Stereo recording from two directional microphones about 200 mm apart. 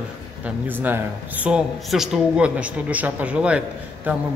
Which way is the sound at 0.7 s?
10° right (ahead or behind).